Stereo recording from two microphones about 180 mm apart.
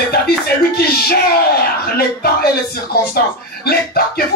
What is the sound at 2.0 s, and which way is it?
Speech, 60° left (ahead or behind).